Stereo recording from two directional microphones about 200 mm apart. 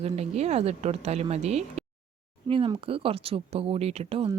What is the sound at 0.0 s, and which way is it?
A woman's voice, 30° right (ahead or behind).